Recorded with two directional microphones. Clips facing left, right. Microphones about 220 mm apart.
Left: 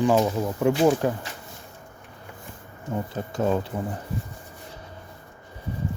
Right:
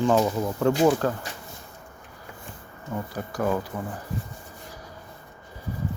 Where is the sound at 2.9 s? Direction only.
20° left (ahead or behind).